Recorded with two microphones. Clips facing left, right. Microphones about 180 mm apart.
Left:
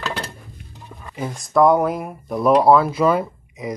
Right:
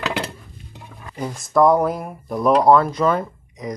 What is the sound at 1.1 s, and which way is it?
Speech, centre (ahead or behind).